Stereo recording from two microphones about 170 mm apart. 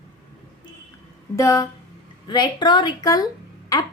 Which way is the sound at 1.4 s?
20° left (ahead or behind).